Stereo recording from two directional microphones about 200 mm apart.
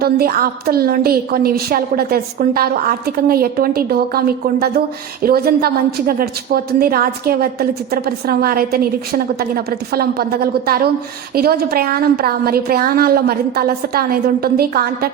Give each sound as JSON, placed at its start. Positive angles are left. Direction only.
{"t": 0.0, "sound": "a woman's voice", "side_deg": -50}